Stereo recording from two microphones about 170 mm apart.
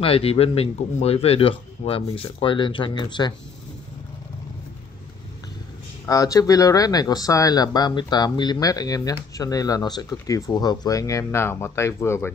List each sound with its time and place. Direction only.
0.0 s speech: 35° left (ahead or behind)
6.0 s speech: 20° left (ahead or behind)